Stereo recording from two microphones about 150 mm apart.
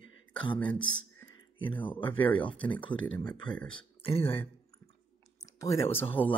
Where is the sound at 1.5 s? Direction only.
35° left (ahead or behind).